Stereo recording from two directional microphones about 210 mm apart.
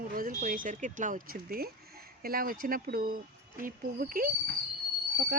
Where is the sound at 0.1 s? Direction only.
40° right (ahead or behind).